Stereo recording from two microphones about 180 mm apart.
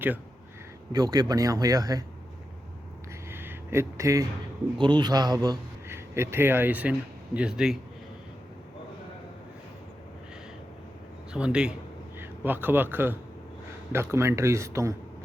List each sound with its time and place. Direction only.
0.9 s a man's voice: 20° right (ahead or behind)
3.2 s a sound: 10° right (ahead or behind)
4.8 s a man's voice: 25° right (ahead or behind); by 7.8 s 5° right (ahead or behind)
11.3 s a man's voice: 5° right (ahead or behind)